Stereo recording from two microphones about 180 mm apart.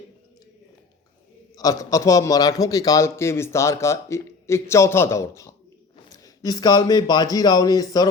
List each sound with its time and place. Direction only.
1.5 s a man's voice: 20° left (ahead or behind)